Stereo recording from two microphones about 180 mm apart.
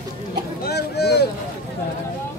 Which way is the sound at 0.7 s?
65° left (ahead or behind).